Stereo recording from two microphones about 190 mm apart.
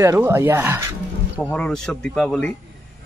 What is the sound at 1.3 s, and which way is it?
Speech, 5° left (ahead or behind).